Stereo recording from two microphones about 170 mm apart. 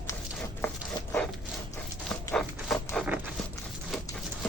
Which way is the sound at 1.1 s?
5° left (ahead or behind).